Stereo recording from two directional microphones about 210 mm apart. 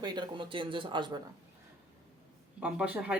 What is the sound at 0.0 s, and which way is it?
Speech, 20° right (ahead or behind).